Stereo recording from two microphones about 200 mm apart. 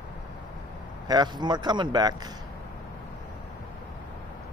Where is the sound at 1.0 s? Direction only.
20° right (ahead or behind).